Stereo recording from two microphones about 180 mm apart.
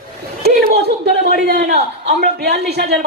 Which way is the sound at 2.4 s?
65° right (ahead or behind).